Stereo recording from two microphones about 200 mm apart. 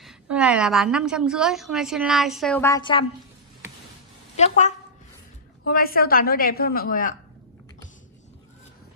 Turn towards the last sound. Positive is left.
turn(degrees=45)  # may be behind; listen again after turning